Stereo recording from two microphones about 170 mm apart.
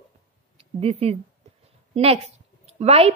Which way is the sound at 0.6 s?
35° right (ahead or behind).